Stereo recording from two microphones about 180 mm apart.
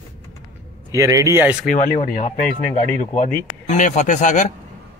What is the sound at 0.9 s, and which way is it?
Speech, 15° right (ahead or behind).